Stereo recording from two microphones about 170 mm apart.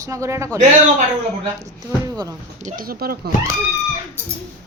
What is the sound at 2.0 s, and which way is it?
Speech, 20° right (ahead or behind).